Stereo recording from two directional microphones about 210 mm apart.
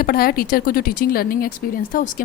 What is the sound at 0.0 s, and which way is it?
A woman's voice, 45° left (ahead or behind).